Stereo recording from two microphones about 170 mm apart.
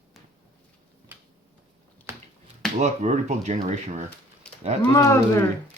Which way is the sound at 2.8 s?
40° right (ahead or behind).